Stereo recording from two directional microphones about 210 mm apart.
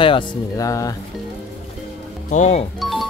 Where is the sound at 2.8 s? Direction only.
Centre (ahead or behind).